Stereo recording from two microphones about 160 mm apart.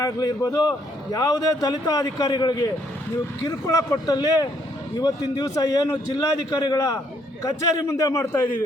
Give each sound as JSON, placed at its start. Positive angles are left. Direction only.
{"t": 0.0, "sound": "a man's voice", "side_deg": 20}